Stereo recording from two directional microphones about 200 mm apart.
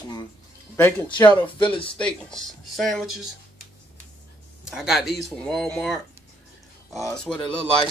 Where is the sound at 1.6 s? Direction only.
25° left (ahead or behind).